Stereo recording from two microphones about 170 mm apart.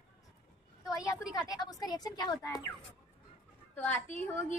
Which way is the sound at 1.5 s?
20° left (ahead or behind).